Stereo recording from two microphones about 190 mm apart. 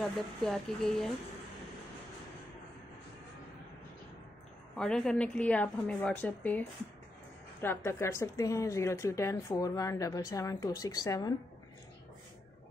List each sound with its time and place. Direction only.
0.0 s speech: centre (ahead or behind)
4.7 s a woman's voice: 5° left (ahead or behind)
7.6 s a woman's voice: 15° left (ahead or behind)